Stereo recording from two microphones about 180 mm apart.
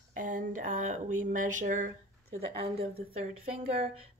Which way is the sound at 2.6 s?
35° right (ahead or behind).